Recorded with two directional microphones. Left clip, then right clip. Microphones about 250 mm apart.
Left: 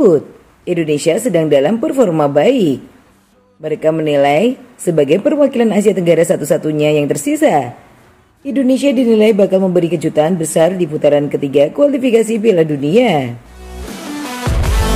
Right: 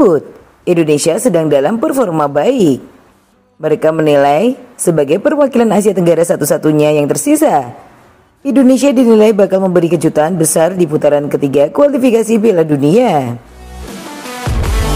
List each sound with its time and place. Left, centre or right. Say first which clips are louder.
0.7 s a woman's voice: right 3 dB; centre